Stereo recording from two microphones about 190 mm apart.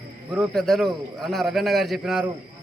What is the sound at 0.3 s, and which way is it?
A man's voice, centre (ahead or behind).